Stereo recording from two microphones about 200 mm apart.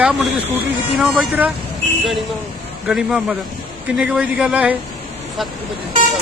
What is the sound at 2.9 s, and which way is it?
Speech, centre (ahead or behind).